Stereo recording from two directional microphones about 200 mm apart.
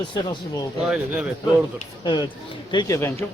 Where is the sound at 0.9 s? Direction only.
5° right (ahead or behind).